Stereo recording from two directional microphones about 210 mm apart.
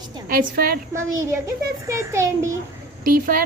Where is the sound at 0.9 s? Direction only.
15° right (ahead or behind).